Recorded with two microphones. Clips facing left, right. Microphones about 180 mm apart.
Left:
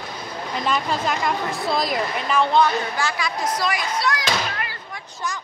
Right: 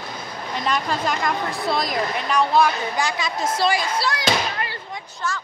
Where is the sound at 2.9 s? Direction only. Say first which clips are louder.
Right 1 dB; 20° right (ahead or behind).